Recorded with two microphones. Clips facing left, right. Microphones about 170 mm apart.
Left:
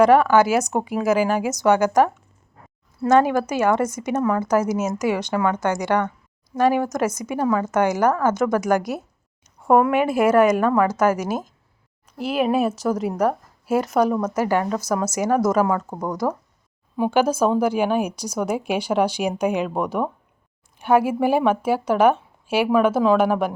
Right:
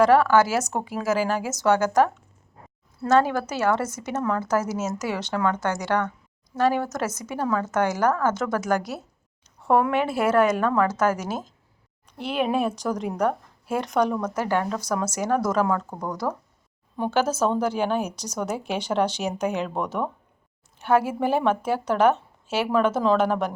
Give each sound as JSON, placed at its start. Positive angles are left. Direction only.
{"t": 0.0, "sound": "a woman's voice", "side_deg": 15}